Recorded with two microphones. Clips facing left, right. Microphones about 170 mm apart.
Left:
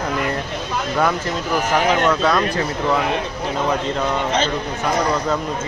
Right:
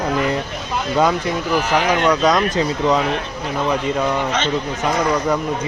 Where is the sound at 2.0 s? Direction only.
15° right (ahead or behind).